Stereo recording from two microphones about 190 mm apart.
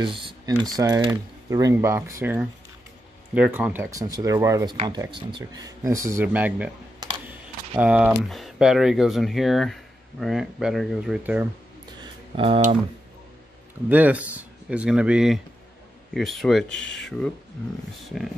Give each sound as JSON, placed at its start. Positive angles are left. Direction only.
{"t": 0.7, "sound": "speech", "side_deg": -20}
{"t": 12.4, "sound": "speech", "side_deg": -30}
{"t": 13.8, "sound": "speech", "side_deg": -10}
{"t": 18.1, "sound": "speech", "side_deg": 0}